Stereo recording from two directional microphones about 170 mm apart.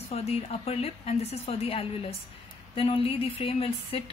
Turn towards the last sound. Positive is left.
turn(degrees=35)  # may be behind; listen again after turning